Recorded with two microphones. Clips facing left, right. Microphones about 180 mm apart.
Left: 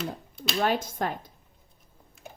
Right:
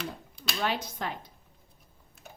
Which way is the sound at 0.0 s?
Centre (ahead or behind).